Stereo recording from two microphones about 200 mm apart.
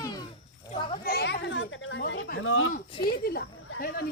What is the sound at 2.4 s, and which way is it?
Speech, 85° left.